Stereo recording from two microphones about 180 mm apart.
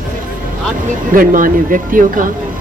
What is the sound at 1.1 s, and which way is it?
Speech, 50° right (ahead or behind).